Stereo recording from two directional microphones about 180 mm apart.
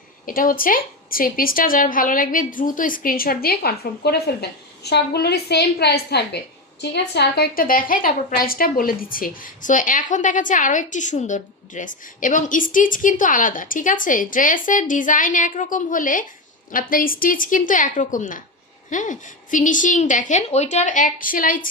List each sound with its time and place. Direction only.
0.3 s a woman's voice: 50° left (ahead or behind)